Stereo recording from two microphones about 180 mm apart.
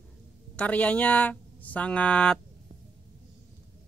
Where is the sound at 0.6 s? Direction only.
5° left (ahead or behind).